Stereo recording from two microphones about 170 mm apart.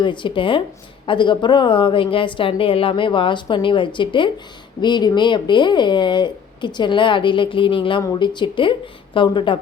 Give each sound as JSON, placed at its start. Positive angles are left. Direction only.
{"t": 0.0, "sound": "speech", "side_deg": 30}